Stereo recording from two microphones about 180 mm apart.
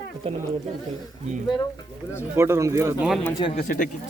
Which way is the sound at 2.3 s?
15° right (ahead or behind).